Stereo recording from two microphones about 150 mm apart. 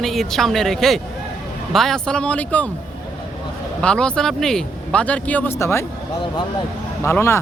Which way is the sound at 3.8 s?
5° left (ahead or behind).